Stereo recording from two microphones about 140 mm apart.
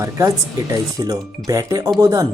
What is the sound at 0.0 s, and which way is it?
Speech, 25° right (ahead or behind).